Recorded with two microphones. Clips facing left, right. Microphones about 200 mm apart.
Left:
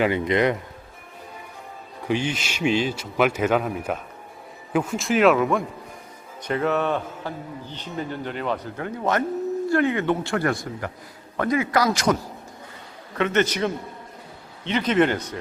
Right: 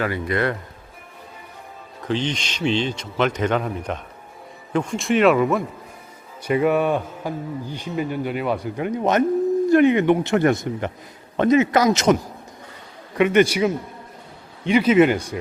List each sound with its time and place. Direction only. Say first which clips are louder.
0.0 s speech: left 2 dB; 20° left (ahead or behind)
2.0 s a man's voice: right 1 dB; 10° left (ahead or behind); by 12.1 s 20° right (ahead or behind)
13.1 s speech: right 5 dB; 15° right (ahead or behind)